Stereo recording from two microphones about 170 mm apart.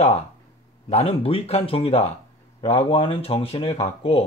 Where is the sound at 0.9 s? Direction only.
35° left (ahead or behind).